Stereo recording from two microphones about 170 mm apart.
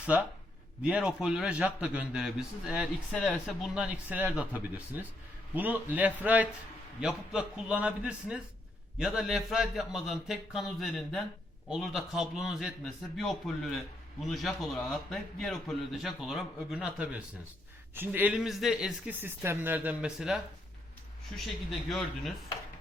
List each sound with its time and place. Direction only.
0.0 s a man's voice: 10° right (ahead or behind)